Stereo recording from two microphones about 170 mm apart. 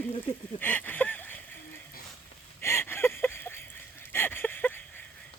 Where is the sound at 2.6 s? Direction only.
15° left (ahead or behind).